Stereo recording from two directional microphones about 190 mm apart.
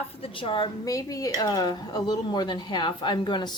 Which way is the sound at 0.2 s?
30° left (ahead or behind).